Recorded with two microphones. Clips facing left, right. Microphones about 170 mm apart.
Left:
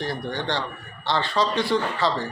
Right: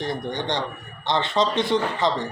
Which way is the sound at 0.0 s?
20° right (ahead or behind).